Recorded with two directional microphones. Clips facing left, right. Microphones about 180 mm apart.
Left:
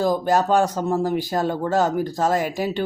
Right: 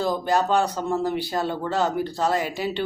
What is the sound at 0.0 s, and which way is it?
Speech, 45° left (ahead or behind).